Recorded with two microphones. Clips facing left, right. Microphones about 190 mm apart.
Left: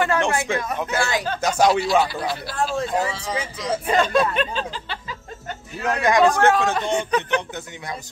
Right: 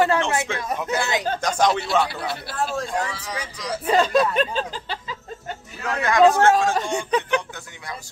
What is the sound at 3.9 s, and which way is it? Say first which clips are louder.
Speech: right 1 dB; 35° right (ahead or behind).